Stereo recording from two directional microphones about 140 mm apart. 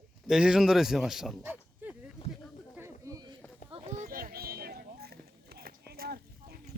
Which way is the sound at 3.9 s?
90° right.